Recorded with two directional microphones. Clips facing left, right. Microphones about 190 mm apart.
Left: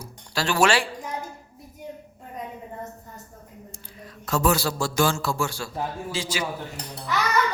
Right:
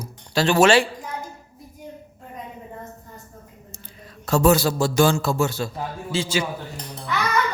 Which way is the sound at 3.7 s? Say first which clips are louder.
Left 1 dB; 25° right (ahead or behind).